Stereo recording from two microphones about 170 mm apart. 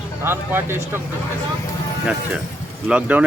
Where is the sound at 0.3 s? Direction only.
15° right (ahead or behind).